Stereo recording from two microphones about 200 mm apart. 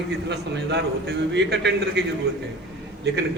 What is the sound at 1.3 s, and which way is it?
Speech, 60° right (ahead or behind).